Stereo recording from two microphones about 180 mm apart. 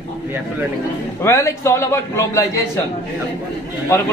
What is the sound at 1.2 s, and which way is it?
A man's voice, 15° left (ahead or behind).